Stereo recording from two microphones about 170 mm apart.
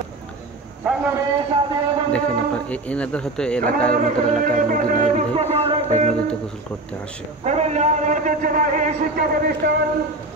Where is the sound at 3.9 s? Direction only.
55° right (ahead or behind).